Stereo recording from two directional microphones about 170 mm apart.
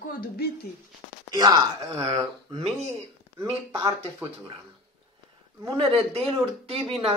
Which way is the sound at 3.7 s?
15° right (ahead or behind).